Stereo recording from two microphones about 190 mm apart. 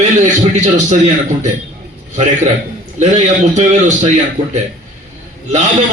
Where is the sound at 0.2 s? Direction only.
40° right (ahead or behind).